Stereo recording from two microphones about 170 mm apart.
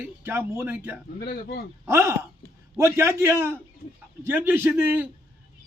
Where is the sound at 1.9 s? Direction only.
15° right (ahead or behind).